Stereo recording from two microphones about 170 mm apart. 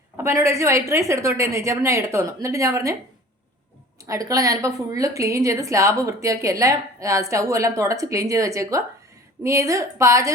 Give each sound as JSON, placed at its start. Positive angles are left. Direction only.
{"t": 0.2, "sound": "a woman's voice", "side_deg": -15}
{"t": 4.0, "sound": "a woman's voice", "side_deg": -20}